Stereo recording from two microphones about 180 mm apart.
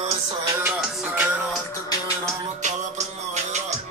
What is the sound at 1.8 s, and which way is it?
Music, 20° left (ahead or behind).